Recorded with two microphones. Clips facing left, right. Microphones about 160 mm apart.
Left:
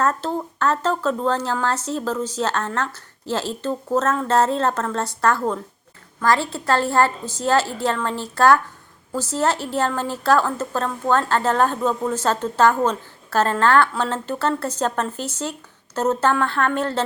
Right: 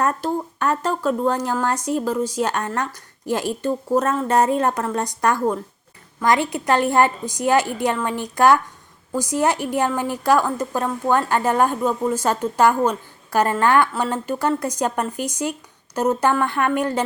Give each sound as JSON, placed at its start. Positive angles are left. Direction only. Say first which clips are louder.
{"t": 0.0, "sound": "speech", "louder": "even", "side_deg": -15}